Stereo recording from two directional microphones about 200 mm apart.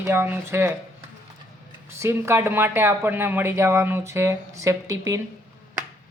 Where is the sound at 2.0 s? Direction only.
10° right (ahead or behind).